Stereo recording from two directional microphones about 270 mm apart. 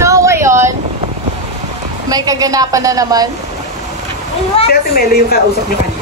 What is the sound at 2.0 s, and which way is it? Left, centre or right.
A woman's voice, centre.